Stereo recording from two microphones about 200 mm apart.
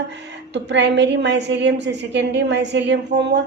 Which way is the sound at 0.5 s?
60° right (ahead or behind).